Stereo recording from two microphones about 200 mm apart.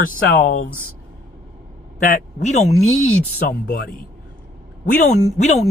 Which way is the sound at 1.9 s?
40° left (ahead or behind).